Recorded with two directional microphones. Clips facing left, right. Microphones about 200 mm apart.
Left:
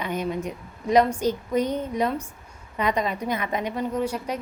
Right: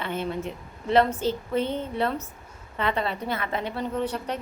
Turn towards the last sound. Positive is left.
turn(degrees=10)  # may be behind; listen again after turning